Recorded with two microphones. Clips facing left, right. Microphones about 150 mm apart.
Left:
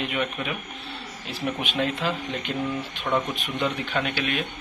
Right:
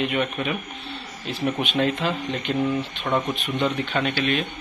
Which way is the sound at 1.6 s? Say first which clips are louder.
Right 2 dB; centre (ahead or behind).